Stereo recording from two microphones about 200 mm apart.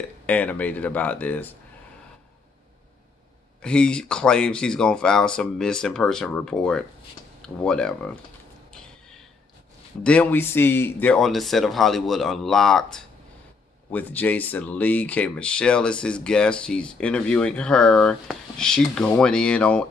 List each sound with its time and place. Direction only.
0.3 s speech: 5° left (ahead or behind)
3.6 s speech: 5° left (ahead or behind)
10.0 s speech: 10° left (ahead or behind)